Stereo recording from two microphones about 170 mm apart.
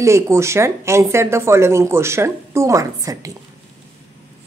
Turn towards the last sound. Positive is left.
turn(degrees=-20)  # may be behind; listen again after turning